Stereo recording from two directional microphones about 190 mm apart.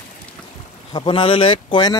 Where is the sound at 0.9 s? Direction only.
25° left (ahead or behind).